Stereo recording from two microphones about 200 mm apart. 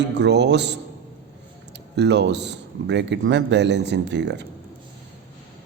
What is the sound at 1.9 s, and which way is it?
A man's voice, 60° right (ahead or behind).